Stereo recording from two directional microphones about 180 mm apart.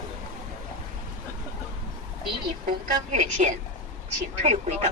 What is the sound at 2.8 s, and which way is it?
A woman's voice, 45° right (ahead or behind).